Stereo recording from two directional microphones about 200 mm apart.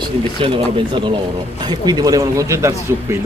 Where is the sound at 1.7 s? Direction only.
20° right (ahead or behind).